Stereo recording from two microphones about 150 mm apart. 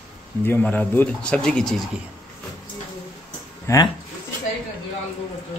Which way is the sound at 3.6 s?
25° left (ahead or behind).